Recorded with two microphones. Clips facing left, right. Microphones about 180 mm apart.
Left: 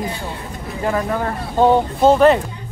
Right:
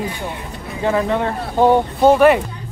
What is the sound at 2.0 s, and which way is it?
Speech, 10° right (ahead or behind).